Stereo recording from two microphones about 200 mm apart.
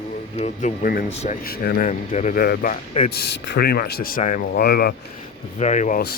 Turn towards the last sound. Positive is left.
turn(degrees=40)  # may be behind; listen again after turning